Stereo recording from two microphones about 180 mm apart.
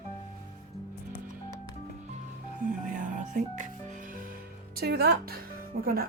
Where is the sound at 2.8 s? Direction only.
45° right (ahead or behind).